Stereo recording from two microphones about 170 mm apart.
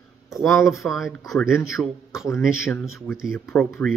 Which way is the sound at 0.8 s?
Centre (ahead or behind).